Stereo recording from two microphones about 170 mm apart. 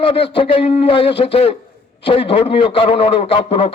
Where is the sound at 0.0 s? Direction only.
30° left (ahead or behind).